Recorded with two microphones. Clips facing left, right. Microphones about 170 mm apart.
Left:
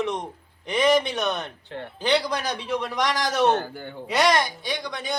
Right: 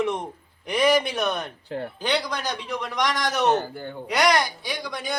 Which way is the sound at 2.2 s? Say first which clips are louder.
Left 2 dB; 30° left (ahead or behind).